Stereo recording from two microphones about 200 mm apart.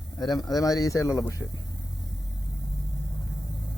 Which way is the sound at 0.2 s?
20° left (ahead or behind).